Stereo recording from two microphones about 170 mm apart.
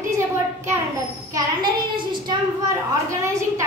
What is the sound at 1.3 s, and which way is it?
Child singing, 25° right (ahead or behind).